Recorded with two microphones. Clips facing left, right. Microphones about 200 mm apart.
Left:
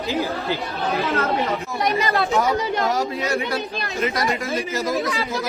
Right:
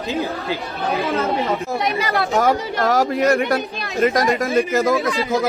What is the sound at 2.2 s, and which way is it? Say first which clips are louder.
A man's voice: right 2 dB; 55° right (ahead or behind).